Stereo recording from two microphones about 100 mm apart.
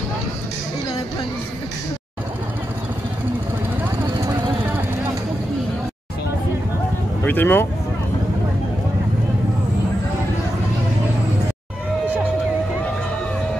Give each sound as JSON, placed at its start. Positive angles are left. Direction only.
{"t": 7.2, "sound": "speech", "side_deg": 20}